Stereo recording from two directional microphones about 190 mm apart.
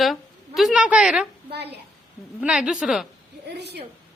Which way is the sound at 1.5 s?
60° right (ahead or behind).